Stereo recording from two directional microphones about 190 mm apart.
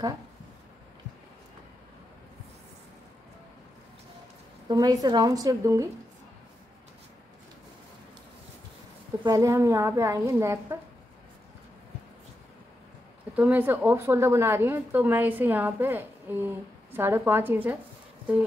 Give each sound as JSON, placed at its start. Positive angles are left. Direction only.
{"t": 4.6, "sound": "a woman's voice", "side_deg": -20}
{"t": 9.2, "sound": "a woman's voice", "side_deg": -15}
{"t": 13.4, "sound": "a woman's voice", "side_deg": -10}